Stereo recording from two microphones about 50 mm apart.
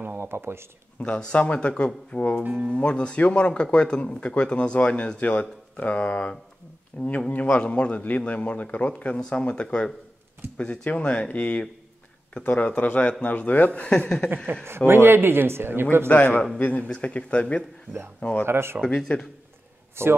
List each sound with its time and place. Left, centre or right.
0.2 s speech: right
0.9 s speech: left
13.7 s speech: left
14.5 s speech: right
16.1 s speech: left
18.4 s speech: right
18.9 s speech: centre
20.0 s speech: right